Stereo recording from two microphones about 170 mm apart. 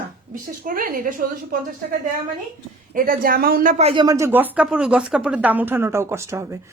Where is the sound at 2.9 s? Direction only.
55° right (ahead or behind).